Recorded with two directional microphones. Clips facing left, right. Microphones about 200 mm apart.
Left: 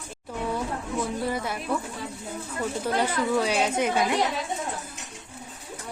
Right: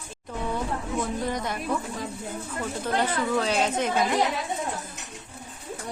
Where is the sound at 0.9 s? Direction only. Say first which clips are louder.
Left 1 dB; 5° left (ahead or behind).